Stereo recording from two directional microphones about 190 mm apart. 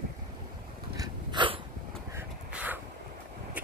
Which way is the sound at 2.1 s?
10° right (ahead or behind).